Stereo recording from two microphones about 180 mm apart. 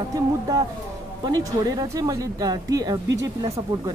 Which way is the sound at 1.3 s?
20° right (ahead or behind).